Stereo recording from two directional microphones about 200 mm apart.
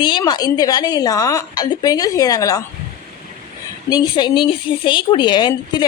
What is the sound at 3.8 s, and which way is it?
A woman's voice, 20° left (ahead or behind).